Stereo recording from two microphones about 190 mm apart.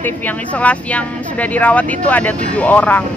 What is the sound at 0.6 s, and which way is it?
Speech, 5° left (ahead or behind).